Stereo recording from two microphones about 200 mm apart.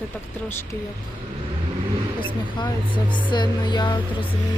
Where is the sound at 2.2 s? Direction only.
25° left (ahead or behind).